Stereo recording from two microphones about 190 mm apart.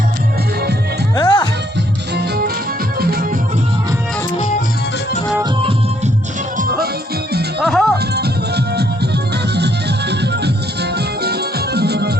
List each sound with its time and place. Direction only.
1.1 s music: 25° left (ahead or behind)
2.1 s music: 60° right (ahead or behind)
7.6 s music: centre (ahead or behind)
8.1 s music: 60° right (ahead or behind)